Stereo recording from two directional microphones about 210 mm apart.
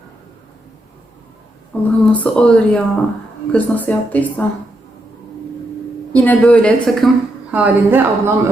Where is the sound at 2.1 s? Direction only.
5° left (ahead or behind).